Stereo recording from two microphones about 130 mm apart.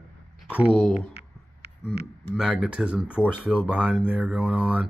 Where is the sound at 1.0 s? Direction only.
50° left (ahead or behind).